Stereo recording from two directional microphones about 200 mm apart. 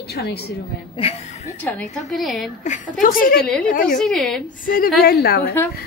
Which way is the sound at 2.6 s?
40° left (ahead or behind).